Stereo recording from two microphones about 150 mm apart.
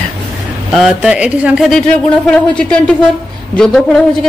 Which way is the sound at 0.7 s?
5° right (ahead or behind).